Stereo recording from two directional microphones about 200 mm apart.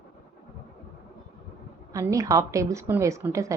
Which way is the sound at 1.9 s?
15° right (ahead or behind).